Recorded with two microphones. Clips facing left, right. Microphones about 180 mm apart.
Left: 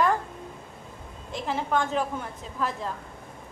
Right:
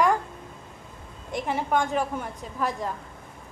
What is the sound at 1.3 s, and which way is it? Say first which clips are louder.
Speech: right 2 dB; 15° right (ahead or behind).